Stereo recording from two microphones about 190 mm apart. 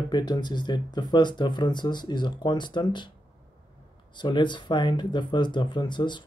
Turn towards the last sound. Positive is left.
turn(degrees=25)  # may be behind; listen again after turning